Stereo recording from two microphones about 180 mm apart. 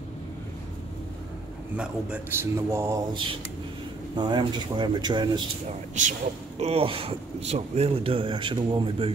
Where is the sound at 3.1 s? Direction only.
25° right (ahead or behind).